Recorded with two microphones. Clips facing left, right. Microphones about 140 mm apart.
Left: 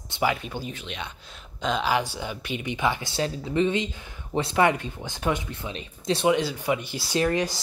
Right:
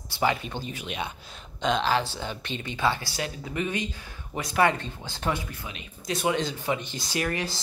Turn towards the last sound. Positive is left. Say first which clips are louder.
# left 5 dB
turn(degrees=20)  # may be behind; listen again after turning